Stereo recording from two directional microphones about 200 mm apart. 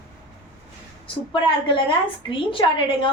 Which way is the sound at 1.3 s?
25° left (ahead or behind).